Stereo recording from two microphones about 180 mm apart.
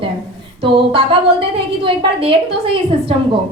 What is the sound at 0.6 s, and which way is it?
A woman's voice, 30° right (ahead or behind).